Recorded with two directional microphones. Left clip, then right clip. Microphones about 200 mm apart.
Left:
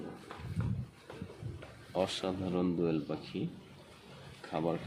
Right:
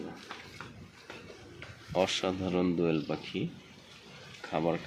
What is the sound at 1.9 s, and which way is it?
Speech, 20° right (ahead or behind).